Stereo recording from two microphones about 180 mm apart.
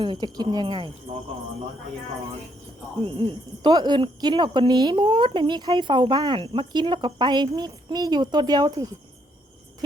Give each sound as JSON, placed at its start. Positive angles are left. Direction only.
{"t": 0.0, "sound": "speech", "side_deg": -25}
{"t": 3.0, "sound": "speech", "side_deg": -30}